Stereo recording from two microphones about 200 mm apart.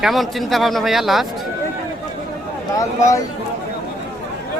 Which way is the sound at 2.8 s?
15° left (ahead or behind).